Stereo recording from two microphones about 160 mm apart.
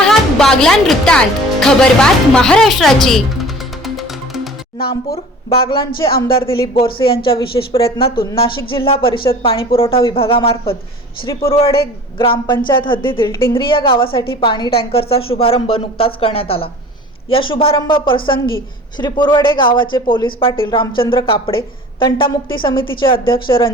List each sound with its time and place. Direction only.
0.0 s music: 5° left (ahead or behind)
1.6 s speech: 5° left (ahead or behind)
5.1 s speech: 30° left (ahead or behind)